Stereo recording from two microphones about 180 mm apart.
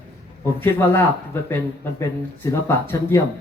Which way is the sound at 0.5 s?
10° left (ahead or behind).